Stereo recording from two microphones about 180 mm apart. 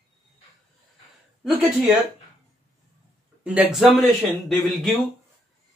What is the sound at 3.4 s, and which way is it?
Speech, 5° right (ahead or behind).